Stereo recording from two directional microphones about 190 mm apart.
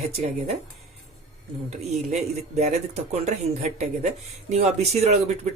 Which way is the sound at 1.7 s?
35° right (ahead or behind).